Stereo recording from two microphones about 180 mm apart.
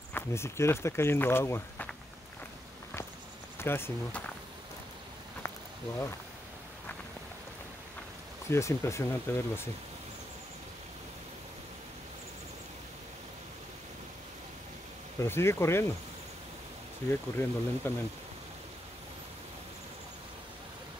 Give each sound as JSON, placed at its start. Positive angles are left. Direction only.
{"t": 0.1, "sound": "speech", "side_deg": 15}
{"t": 3.5, "sound": "speech", "side_deg": 15}
{"t": 5.4, "sound": "a sound", "side_deg": 15}
{"t": 8.5, "sound": "speech", "side_deg": 15}
{"t": 15.1, "sound": "speech", "side_deg": 15}
{"t": 17.1, "sound": "speech", "side_deg": 10}